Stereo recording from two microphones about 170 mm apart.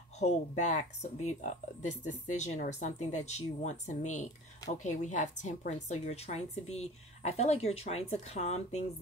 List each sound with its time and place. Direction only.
0.2 s a woman's voice: 45° left (ahead or behind)